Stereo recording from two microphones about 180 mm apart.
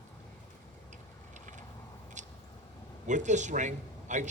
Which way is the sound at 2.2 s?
40° right (ahead or behind).